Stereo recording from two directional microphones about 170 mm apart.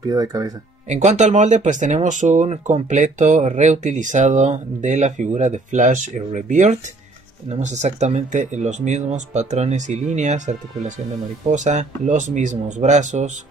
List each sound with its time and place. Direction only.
0.0 s speech: 20° right (ahead or behind)
0.8 s speech: 45° right (ahead or behind)